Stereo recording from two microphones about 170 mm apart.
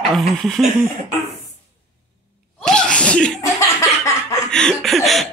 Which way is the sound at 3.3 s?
20° left (ahead or behind).